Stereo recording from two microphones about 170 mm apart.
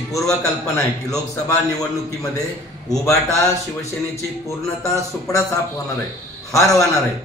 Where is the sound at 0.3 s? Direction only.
20° left (ahead or behind).